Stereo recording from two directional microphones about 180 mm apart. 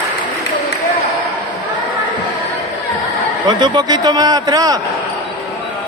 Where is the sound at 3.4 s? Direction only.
25° right (ahead or behind).